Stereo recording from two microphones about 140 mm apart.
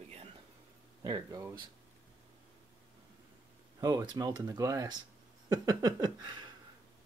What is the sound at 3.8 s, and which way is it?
Speech, 25° right (ahead or behind).